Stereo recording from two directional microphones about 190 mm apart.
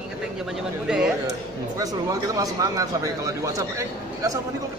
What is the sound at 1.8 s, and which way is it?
Speech, 20° right (ahead or behind).